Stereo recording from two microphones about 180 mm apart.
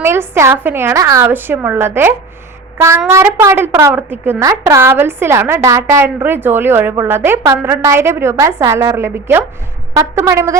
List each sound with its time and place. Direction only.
0.0 s a woman's voice: 15° right (ahead or behind)